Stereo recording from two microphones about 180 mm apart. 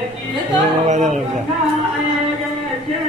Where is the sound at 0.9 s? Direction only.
40° right (ahead or behind).